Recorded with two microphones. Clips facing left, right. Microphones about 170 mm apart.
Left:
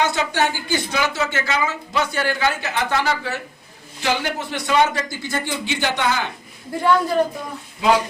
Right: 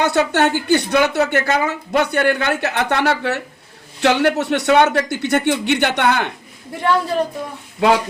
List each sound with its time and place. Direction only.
0.0 s speech: 60° right (ahead or behind)
7.8 s speech: 70° right (ahead or behind)